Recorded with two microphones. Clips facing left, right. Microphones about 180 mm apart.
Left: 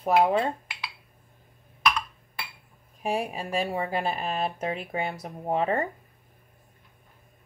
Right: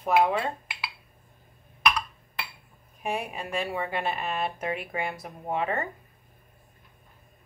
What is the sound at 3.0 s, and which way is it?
Speech, 35° left (ahead or behind).